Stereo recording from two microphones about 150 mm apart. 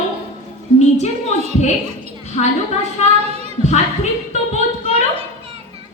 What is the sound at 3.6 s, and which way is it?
Speech, 50° left (ahead or behind).